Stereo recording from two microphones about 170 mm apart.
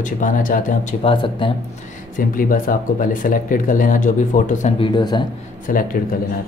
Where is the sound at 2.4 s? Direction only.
55° left (ahead or behind).